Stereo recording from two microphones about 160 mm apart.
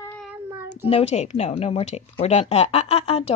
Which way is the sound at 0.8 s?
40° left (ahead or behind).